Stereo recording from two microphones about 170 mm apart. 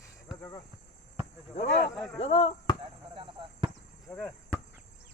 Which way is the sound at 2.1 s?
35° left (ahead or behind).